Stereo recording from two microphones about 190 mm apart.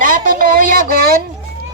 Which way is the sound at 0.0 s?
45° right (ahead or behind).